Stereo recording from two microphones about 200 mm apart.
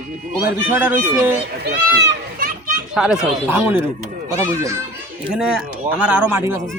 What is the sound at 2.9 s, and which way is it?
Speech, 5° right (ahead or behind).